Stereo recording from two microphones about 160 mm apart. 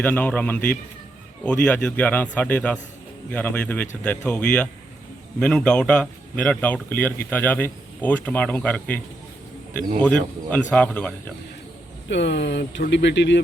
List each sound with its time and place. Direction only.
0.0 s a man's voice: 10° left (ahead or behind)
10.0 s a man's voice: 5° left (ahead or behind)
12.0 s speech: 90° left